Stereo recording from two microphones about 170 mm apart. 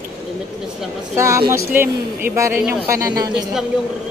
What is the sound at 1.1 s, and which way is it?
A man's voice, 15° right (ahead or behind).